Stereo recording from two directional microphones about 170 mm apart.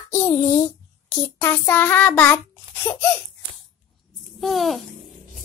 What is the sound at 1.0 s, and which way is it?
Child singing, 10° left (ahead or behind).